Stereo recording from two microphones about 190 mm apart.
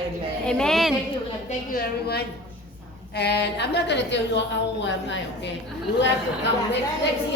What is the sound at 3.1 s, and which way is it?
A woman's voice, 60° left (ahead or behind).